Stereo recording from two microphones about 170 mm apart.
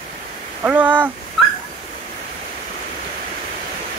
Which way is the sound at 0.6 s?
10° right (ahead or behind).